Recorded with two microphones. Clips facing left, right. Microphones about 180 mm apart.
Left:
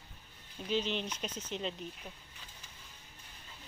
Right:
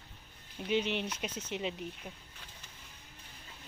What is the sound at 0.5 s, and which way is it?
Speech, 10° right (ahead or behind).